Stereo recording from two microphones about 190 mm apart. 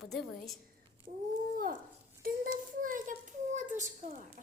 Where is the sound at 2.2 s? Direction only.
45° right (ahead or behind).